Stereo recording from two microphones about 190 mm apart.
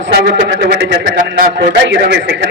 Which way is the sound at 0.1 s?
60° right (ahead or behind).